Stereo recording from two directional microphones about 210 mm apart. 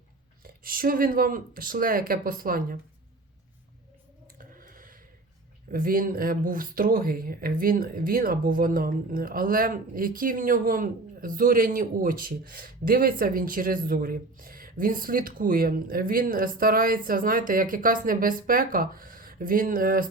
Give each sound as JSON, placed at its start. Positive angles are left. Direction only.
{"t": 0.4, "sound": "speech", "side_deg": -45}
{"t": 4.4, "sound": "a sound", "side_deg": -40}
{"t": 5.7, "sound": "speech", "side_deg": -40}